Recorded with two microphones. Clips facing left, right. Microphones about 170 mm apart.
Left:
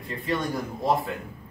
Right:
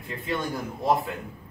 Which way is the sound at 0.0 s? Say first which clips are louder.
Left 2 dB; centre (ahead or behind).